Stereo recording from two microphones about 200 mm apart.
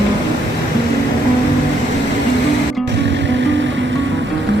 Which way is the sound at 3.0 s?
60° right (ahead or behind).